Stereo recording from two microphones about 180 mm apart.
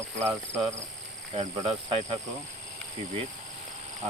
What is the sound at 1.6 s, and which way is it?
Speech, 30° right (ahead or behind).